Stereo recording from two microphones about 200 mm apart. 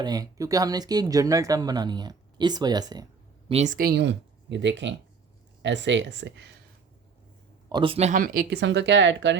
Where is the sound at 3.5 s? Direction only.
35° right (ahead or behind); by 6.5 s 60° right (ahead or behind).